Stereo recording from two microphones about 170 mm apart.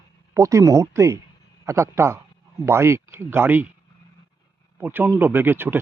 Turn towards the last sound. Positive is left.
turn(degrees=-15)  # may be behind; listen again after turning